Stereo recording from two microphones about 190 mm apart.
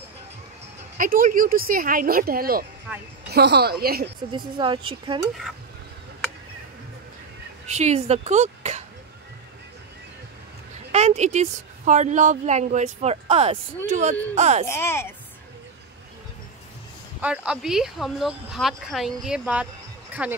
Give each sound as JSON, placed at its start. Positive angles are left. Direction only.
{"t": 0.9, "sound": "speech", "side_deg": -45}
{"t": 3.3, "sound": "a woman's voice", "side_deg": -60}
{"t": 4.6, "sound": "speech", "side_deg": -25}
{"t": 7.6, "sound": "speech", "side_deg": -35}
{"t": 10.9, "sound": "a woman's voice", "side_deg": -35}
{"t": 14.7, "sound": "speech", "side_deg": 15}
{"t": 17.2, "sound": "speech", "side_deg": -5}